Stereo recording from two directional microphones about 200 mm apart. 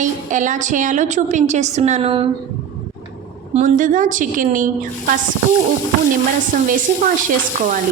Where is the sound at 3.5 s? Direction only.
40° right (ahead or behind).